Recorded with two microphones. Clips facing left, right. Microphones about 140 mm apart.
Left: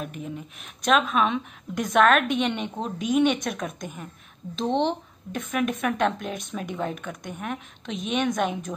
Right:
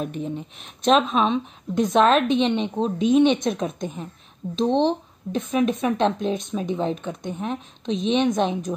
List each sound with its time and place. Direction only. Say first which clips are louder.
0.0 s speech: right 6 dB; 30° right (ahead or behind)